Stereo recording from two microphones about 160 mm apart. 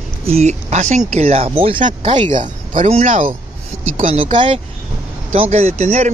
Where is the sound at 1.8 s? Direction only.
50° right (ahead or behind).